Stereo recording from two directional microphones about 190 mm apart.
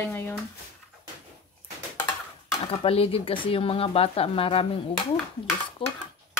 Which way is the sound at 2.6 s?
30° left (ahead or behind).